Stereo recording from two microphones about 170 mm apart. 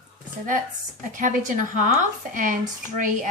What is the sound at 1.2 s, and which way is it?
Speech, 50° right (ahead or behind).